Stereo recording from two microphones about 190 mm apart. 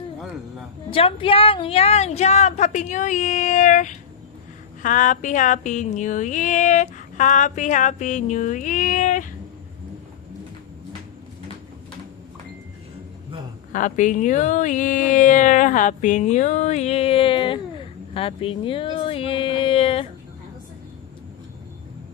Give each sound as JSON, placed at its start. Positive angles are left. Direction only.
{"t": 0.9, "sound": "speech", "side_deg": 30}
{"t": 13.7, "sound": "speech", "side_deg": 40}